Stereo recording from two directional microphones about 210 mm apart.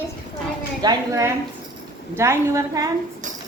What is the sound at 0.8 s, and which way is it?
A woman's voice, 15° right (ahead or behind).